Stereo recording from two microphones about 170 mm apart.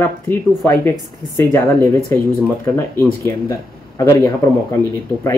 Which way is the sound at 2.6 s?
15° left (ahead or behind).